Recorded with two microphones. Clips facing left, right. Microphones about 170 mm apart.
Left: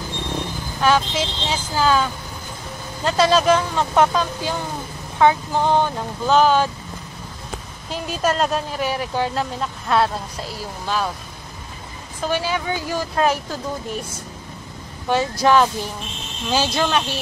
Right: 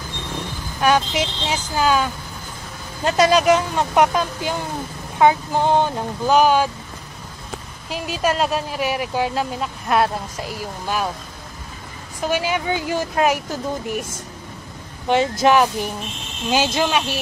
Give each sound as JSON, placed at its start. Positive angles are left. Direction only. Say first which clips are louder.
{"t": 0.7, "sound": "speech", "louder": "right 1 dB", "side_deg": -15}
{"t": 3.1, "sound": "speech", "louder": "right 1 dB", "side_deg": -15}
{"t": 7.9, "sound": "speech", "louder": "even", "side_deg": -10}
{"t": 12.2, "sound": "speech", "louder": "right 1 dB", "side_deg": -15}
{"t": 15.4, "sound": "speech", "louder": "left 1 dB", "side_deg": -15}